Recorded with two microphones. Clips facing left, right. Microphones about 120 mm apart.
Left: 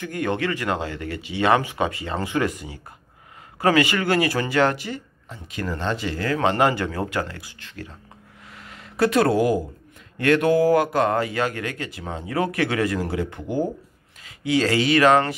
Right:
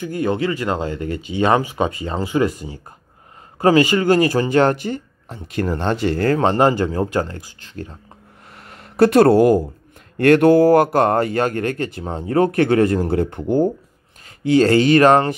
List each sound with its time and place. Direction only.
0.0 s speech: 30° right (ahead or behind)
3.6 s speech: 35° right (ahead or behind)
5.8 s a sound: 55° right (ahead or behind)
6.8 s speech: 30° right (ahead or behind)
8.5 s a sound: 50° right (ahead or behind)
10.9 s speech: 50° right (ahead or behind)